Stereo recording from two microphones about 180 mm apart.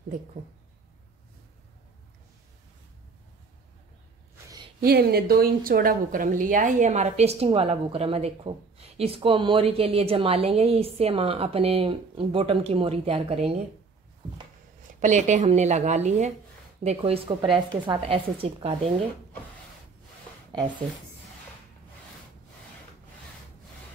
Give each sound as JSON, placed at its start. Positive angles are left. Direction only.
{"t": 4.7, "sound": "a woman's voice", "side_deg": -60}
{"t": 15.0, "sound": "a woman's voice", "side_deg": -45}